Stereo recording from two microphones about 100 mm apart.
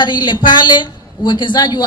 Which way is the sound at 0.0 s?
50° left (ahead or behind).